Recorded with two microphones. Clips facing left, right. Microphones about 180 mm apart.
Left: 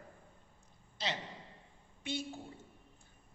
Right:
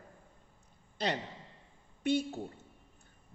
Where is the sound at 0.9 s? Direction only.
55° right (ahead or behind).